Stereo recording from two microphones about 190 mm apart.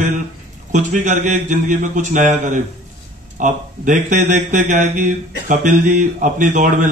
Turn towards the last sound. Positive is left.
turn(degrees=-45)  # may be behind; listen again after turning